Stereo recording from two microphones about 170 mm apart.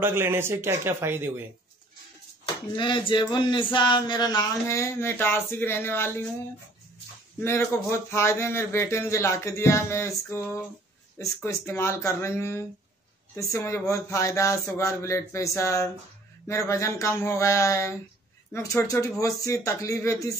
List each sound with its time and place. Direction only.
0.0 s speech: 15° right (ahead or behind)
2.4 s speech: 25° left (ahead or behind)
7.3 s speech: 15° left (ahead or behind)